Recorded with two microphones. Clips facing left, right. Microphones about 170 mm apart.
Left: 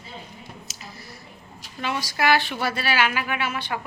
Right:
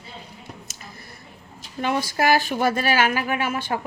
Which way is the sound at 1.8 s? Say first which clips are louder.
Right 3 dB; 50° right (ahead or behind).